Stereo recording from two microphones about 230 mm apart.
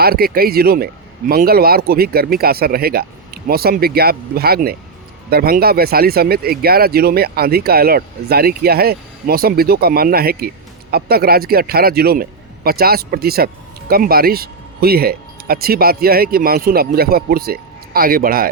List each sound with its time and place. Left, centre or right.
0.0 s a man's voice: right